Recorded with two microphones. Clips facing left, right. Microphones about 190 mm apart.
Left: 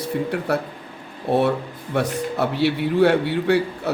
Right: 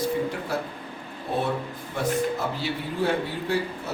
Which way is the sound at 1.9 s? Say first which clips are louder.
Left 2 dB; 70° left (ahead or behind).